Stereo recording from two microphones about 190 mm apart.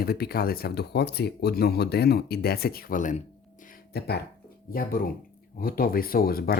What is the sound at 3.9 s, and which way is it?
Speech, 60° left (ahead or behind).